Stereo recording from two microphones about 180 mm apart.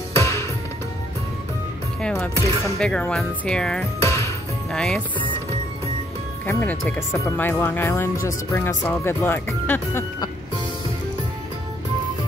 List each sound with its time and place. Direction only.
0.1 s music: 15° left (ahead or behind)
2.0 s speech: 5° left (ahead or behind)
4.0 s music: 15° left (ahead or behind)
4.6 s speech: 5° left (ahead or behind)
6.4 s speech: 10° left (ahead or behind)